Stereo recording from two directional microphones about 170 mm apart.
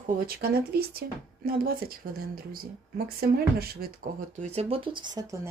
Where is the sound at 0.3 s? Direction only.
65° right (ahead or behind).